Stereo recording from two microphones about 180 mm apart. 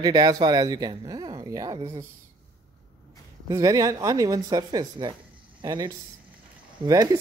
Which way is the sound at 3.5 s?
20° right (ahead or behind).